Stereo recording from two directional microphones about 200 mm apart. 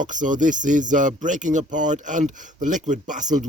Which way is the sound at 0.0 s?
40° right (ahead or behind).